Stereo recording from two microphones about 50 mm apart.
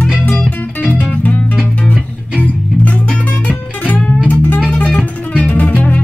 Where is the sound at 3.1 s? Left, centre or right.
Left.